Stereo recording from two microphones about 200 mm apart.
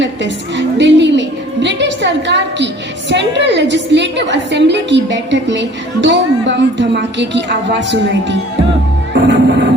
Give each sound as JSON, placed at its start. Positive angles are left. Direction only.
{"t": 0.0, "sound": "a woman's voice", "side_deg": -60}
{"t": 9.1, "sound": "music", "side_deg": -60}